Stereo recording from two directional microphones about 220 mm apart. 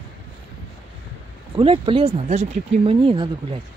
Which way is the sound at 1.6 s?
25° right (ahead or behind).